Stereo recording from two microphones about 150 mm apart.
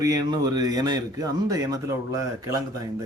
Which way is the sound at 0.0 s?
25° right (ahead or behind).